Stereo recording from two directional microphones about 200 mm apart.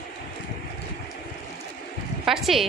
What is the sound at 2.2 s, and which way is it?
Speech, centre (ahead or behind).